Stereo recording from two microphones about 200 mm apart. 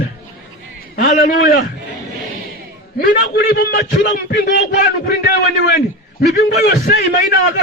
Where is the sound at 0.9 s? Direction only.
45° left (ahead or behind).